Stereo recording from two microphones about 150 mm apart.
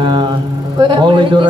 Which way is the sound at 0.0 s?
30° right (ahead or behind).